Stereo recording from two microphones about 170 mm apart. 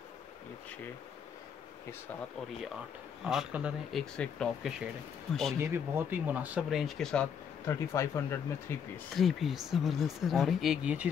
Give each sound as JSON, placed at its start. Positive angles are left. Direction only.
{"t": 3.3, "sound": "speech", "side_deg": -5}
{"t": 5.6, "sound": "speech", "side_deg": -15}
{"t": 7.6, "sound": "speech", "side_deg": 15}
{"t": 9.1, "sound": "speech", "side_deg": 0}